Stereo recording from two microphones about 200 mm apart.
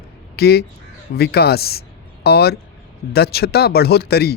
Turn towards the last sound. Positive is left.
turn(degrees=55)  # may be behind; listen again after turning